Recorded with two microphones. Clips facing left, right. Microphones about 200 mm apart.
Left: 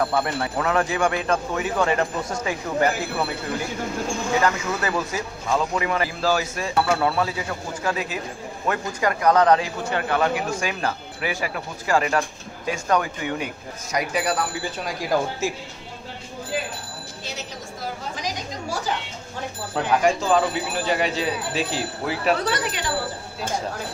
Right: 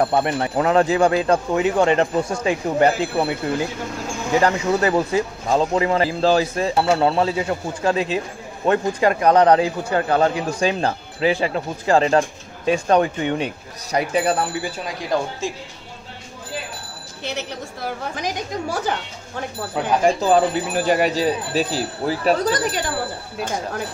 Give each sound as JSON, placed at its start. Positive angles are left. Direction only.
{"t": 0.0, "sound": "speech", "side_deg": -25}
{"t": 4.4, "sound": "speech", "side_deg": -30}
{"t": 15.0, "sound": "speech", "side_deg": 5}
{"t": 17.2, "sound": "a sound", "side_deg": -65}
{"t": 18.1, "sound": "a woman's voice", "side_deg": -55}
{"t": 20.0, "sound": "speech", "side_deg": -35}